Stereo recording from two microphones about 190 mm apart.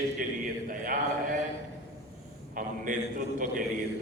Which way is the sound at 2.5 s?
45° right (ahead or behind).